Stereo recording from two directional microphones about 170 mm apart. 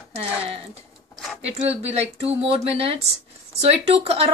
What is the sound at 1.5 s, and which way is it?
Speech, 35° right (ahead or behind).